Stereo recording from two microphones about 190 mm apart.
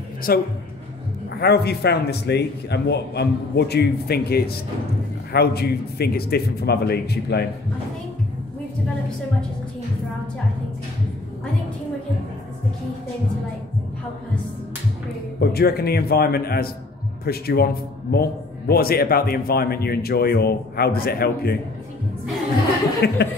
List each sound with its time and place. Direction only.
0.3 s a man's voice: 55° left (ahead or behind)
15.5 s a man's voice: 55° left (ahead or behind)
23.0 s a man's voice: 60° left (ahead or behind)